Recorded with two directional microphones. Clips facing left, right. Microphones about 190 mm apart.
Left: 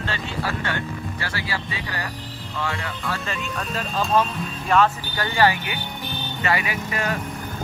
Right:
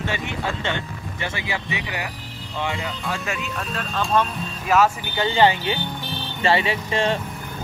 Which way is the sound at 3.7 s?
5° left (ahead or behind).